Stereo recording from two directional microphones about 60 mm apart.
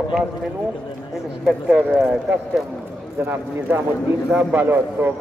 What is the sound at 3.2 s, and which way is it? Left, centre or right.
A man's voice, right.